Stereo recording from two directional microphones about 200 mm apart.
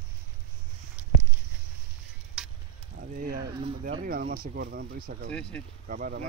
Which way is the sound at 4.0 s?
45° right (ahead or behind).